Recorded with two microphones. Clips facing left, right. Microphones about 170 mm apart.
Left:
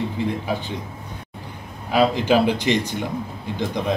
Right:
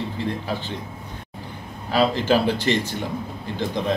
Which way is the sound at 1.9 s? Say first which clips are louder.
Left 2 dB; 15° left (ahead or behind).